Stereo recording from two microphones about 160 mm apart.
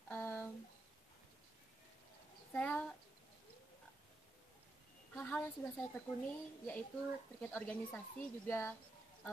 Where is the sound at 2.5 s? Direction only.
10° left (ahead or behind).